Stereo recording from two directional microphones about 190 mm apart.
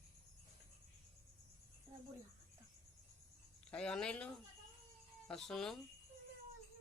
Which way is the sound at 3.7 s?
5° left (ahead or behind).